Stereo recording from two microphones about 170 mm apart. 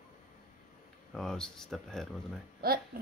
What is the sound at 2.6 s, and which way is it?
Speech, 60° right (ahead or behind).